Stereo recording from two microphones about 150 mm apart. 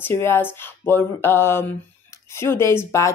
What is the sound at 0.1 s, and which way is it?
Speech, 15° left (ahead or behind).